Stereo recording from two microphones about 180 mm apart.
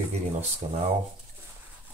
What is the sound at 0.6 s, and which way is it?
Speech, 40° right (ahead or behind).